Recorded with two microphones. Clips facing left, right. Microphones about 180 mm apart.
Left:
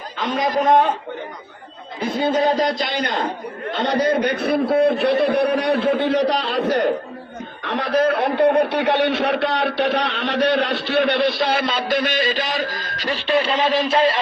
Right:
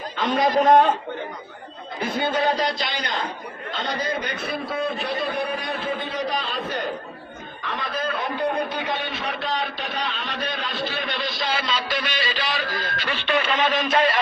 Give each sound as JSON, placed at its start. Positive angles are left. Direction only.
{"t": 0.2, "sound": "a man's voice", "side_deg": 0}
{"t": 2.6, "sound": "a man's voice", "side_deg": 45}